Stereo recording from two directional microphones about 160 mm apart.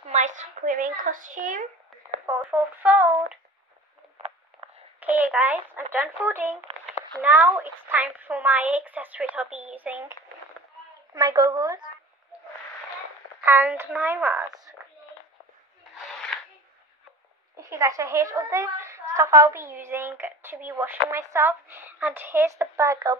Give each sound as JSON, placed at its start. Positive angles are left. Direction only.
{"t": 0.0, "sound": "speech", "side_deg": -50}
{"t": 2.5, "sound": "a woman's voice", "side_deg": -10}
{"t": 5.0, "sound": "a woman's voice", "side_deg": -10}
{"t": 11.1, "sound": "a woman's voice", "side_deg": -25}
{"t": 13.5, "sound": "a woman's voice", "side_deg": -15}
{"t": 16.0, "sound": "a sound", "side_deg": 5}
{"t": 17.6, "sound": "a woman's voice", "side_deg": -20}